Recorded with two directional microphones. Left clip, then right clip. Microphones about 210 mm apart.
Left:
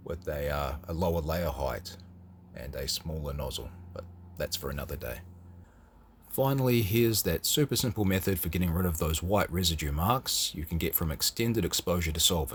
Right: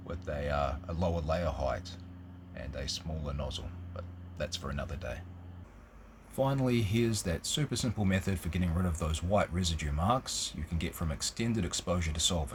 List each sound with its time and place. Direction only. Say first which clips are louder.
0.1 s speech: left 2 dB; 45° left (ahead or behind)
6.3 s speech: left 3 dB; 50° left (ahead or behind)